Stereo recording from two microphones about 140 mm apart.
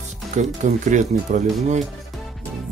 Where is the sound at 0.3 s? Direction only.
60° right (ahead or behind).